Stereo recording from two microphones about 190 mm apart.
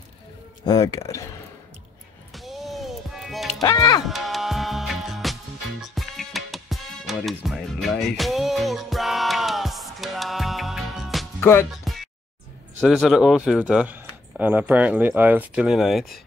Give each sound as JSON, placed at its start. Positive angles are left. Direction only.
{"t": 0.7, "sound": "speech", "side_deg": 20}
{"t": 2.3, "sound": "music", "side_deg": 0}
{"t": 3.6, "sound": "speech", "side_deg": 20}
{"t": 4.1, "sound": "music", "side_deg": 0}
{"t": 12.8, "sound": "speech", "side_deg": 0}